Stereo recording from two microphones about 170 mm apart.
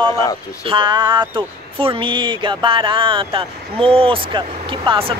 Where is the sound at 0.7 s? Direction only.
30° right (ahead or behind).